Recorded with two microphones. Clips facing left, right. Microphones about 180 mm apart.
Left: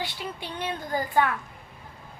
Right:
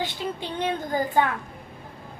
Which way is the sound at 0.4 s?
20° right (ahead or behind).